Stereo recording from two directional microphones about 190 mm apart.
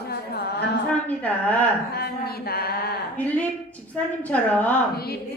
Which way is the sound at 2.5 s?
55° left (ahead or behind).